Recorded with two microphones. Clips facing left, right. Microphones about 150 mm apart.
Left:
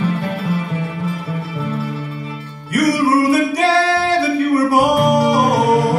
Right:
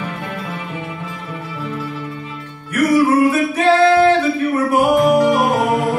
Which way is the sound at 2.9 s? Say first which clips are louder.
Right 1 dB; 35° left (ahead or behind).